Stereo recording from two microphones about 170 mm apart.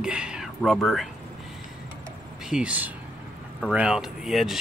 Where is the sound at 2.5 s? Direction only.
5° right (ahead or behind).